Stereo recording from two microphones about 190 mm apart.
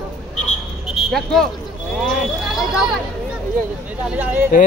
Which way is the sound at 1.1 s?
Centre (ahead or behind).